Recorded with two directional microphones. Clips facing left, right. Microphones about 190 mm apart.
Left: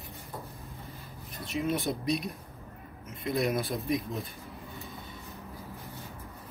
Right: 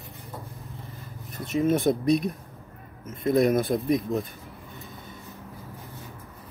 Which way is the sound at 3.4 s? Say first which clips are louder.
Right 8 dB; 50° right (ahead or behind).